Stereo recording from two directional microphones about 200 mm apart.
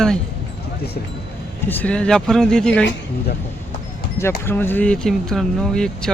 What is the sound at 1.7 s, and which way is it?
Speech, 10° left (ahead or behind).